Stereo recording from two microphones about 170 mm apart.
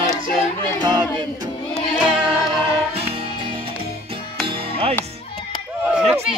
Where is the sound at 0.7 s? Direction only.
25° right (ahead or behind).